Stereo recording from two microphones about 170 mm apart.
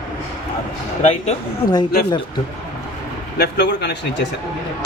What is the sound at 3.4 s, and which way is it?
Speech, 90° left.